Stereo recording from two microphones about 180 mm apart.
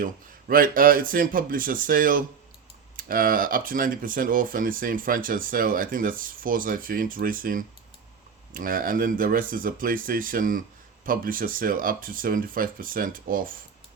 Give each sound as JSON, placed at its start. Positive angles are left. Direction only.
{"t": 0.0, "sound": "speech", "side_deg": -50}